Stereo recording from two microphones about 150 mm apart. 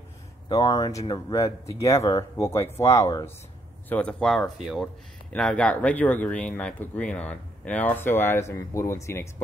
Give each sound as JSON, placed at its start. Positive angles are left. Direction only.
{"t": 0.5, "sound": "speech", "side_deg": 25}
{"t": 3.9, "sound": "speech", "side_deg": 5}